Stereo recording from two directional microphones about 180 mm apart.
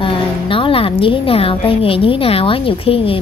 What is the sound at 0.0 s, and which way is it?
A woman's voice, 30° left (ahead or behind).